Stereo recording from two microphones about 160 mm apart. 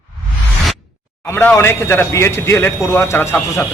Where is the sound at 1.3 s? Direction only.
15° left (ahead or behind).